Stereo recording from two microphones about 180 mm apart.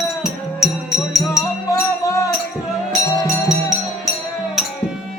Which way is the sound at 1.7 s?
15° left (ahead or behind).